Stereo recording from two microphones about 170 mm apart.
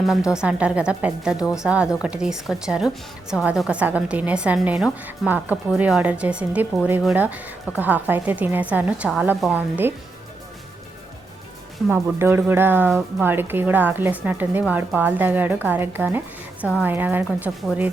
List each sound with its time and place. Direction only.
0.1 s a woman's voice: 5° right (ahead or behind)
12.2 s a woman's voice: 10° right (ahead or behind)